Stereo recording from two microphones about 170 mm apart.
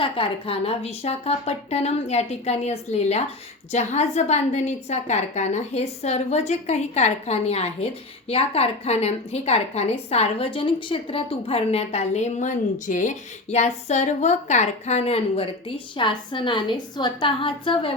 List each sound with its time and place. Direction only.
0.0 s a woman's voice: 30° left (ahead or behind)